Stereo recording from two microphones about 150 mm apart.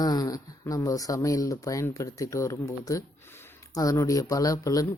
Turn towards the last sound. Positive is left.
turn(degrees=25)  # may be behind; listen again after turning